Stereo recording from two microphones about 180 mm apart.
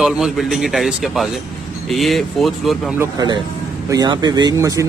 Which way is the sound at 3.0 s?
20° right (ahead or behind).